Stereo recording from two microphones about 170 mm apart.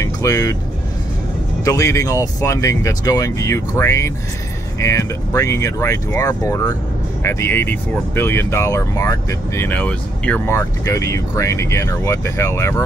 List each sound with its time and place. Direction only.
0.0 s speech: 20° left (ahead or behind)
1.6 s speech: 20° left (ahead or behind)